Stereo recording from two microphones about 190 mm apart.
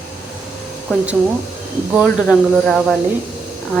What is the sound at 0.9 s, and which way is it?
A woman's voice, 10° left (ahead or behind).